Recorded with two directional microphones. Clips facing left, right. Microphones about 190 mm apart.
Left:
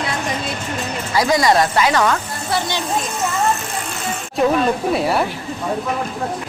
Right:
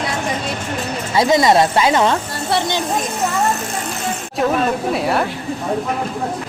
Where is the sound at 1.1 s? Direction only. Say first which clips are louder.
Right 2 dB; 25° right (ahead or behind).